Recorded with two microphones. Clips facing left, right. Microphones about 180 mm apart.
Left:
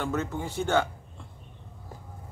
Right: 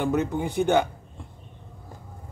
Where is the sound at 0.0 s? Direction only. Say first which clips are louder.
Right 6 dB; 15° right (ahead or behind).